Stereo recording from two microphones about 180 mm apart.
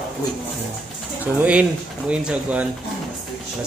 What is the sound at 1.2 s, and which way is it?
Speech, 10° right (ahead or behind).